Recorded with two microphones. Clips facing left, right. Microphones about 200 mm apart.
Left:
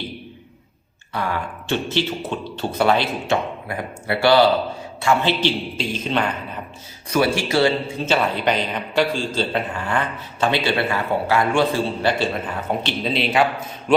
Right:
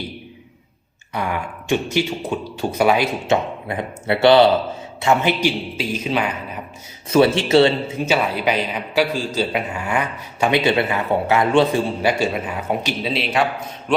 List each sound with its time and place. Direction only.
1.1 s a man's voice: 15° right (ahead or behind)
3.2 s a man's voice: 25° right (ahead or behind)
5.4 s a man's voice: 10° right (ahead or behind)
7.1 s a man's voice: 25° right (ahead or behind)
8.0 s a man's voice: 5° right (ahead or behind)
12.0 s a man's voice: 10° right (ahead or behind)